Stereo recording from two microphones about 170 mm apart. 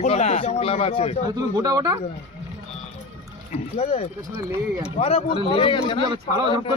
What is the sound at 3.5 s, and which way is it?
Speech, 35° left (ahead or behind).